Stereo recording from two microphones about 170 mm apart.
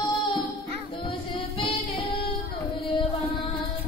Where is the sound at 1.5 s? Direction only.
30° left (ahead or behind).